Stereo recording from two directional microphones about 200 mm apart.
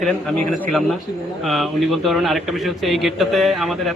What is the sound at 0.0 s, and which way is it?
A man's voice, 5° left (ahead or behind).